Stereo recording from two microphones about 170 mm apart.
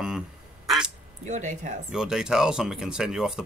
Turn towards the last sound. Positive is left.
turn(degrees=-5)  # may be behind; listen again after turning